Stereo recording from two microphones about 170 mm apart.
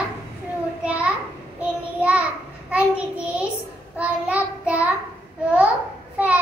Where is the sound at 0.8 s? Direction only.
5° right (ahead or behind).